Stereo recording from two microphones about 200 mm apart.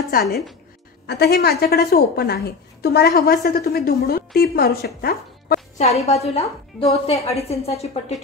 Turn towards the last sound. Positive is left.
turn(degrees=30)  # may be behind; listen again after turning